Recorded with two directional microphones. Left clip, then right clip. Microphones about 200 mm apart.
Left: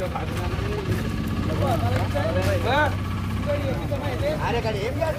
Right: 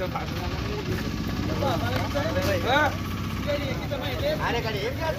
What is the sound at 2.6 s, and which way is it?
Speech, 40° left (ahead or behind).